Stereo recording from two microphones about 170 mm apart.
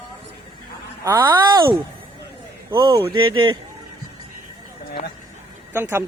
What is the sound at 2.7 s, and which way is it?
Speech, 20° right (ahead or behind).